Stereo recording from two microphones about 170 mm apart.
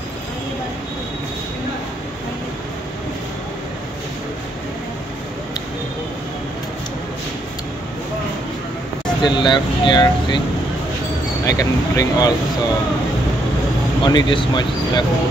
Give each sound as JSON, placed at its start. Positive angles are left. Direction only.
{"t": 9.2, "sound": "speech", "side_deg": 25}
{"t": 11.4, "sound": "speech", "side_deg": 20}
{"t": 14.0, "sound": "speech", "side_deg": 25}